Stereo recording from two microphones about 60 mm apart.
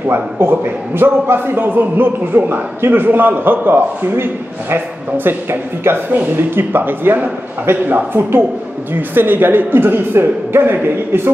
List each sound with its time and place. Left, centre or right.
0.1 s a man's voice: right